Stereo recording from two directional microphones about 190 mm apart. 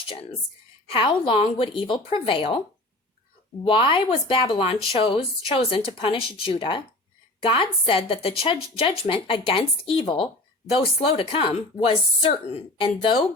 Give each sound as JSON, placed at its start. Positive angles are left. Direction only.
{"t": 0.9, "sound": "a woman's voice", "side_deg": 30}
{"t": 3.6, "sound": "a woman's voice", "side_deg": 30}